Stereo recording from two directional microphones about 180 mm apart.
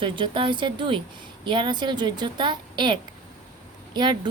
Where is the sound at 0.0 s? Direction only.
25° right (ahead or behind).